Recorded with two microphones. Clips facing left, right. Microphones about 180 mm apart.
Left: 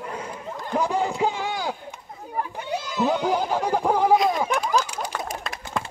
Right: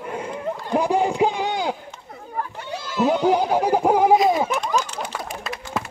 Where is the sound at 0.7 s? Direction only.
15° right (ahead or behind).